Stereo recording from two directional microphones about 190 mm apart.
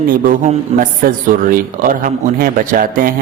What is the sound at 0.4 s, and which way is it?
A man's voice, 45° right (ahead or behind).